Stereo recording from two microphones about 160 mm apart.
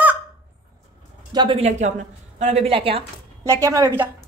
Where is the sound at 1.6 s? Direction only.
45° right (ahead or behind).